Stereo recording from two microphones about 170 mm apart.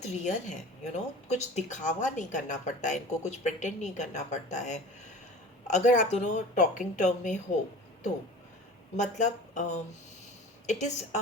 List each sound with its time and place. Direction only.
0.0 s speech: 45° left (ahead or behind)
9.0 s a woman's voice: 45° left (ahead or behind)